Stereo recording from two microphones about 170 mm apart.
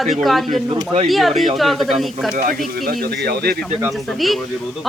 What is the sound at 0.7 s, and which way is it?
Speech, 30° right (ahead or behind).